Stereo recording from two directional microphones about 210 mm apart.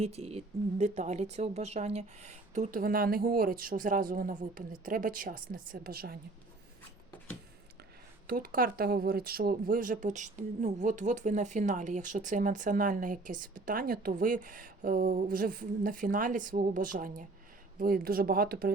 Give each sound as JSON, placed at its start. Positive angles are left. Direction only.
{"t": 0.0, "sound": "speech", "side_deg": -30}
{"t": 8.3, "sound": "speech", "side_deg": -45}